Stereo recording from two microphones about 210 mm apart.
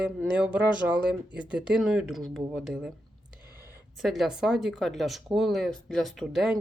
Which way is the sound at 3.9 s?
Centre (ahead or behind).